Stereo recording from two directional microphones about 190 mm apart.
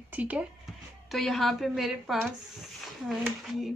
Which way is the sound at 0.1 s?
5° right (ahead or behind).